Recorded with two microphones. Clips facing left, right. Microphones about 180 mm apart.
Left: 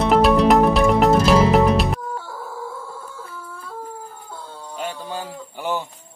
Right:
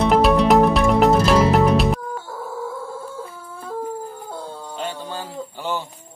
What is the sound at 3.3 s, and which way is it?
Chicken, 45° right (ahead or behind).